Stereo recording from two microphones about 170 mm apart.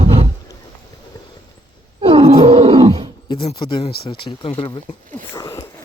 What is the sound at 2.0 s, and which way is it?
Roar, 30° right (ahead or behind).